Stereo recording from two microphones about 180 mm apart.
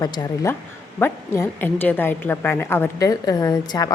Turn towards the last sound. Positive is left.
turn(degrees=20)  # may be behind; listen again after turning